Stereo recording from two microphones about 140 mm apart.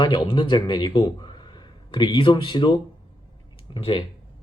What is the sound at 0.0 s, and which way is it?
Speech, 35° left (ahead or behind).